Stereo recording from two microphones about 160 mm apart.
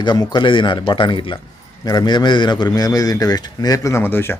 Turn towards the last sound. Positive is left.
turn(degrees=15)  # may be behind; listen again after turning